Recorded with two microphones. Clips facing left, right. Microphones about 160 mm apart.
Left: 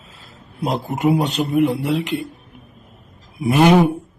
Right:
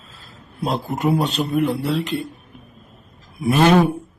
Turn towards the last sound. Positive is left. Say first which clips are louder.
# left 1 dB
turn(degrees=15)  # may be behind; listen again after turning